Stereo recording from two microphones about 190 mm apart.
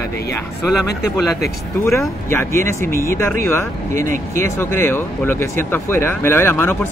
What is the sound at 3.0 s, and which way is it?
Speech, 15° left (ahead or behind).